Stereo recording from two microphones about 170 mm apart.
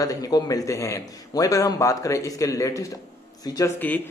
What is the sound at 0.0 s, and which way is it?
A man's voice, 20° left (ahead or behind).